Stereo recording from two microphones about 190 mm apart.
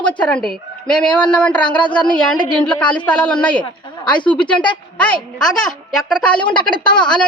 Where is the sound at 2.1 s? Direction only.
5° left (ahead or behind).